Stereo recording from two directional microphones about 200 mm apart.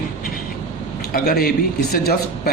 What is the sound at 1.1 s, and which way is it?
Speech, 50° left (ahead or behind).